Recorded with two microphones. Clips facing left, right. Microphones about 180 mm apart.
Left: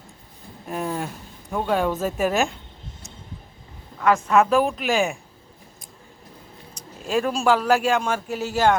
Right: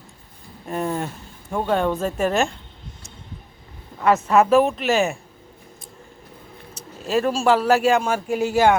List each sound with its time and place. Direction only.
0.7 s speech: centre (ahead or behind)
4.1 s speech: 5° right (ahead or behind)
7.0 s speech: centre (ahead or behind)
8.3 s speech: 50° right (ahead or behind)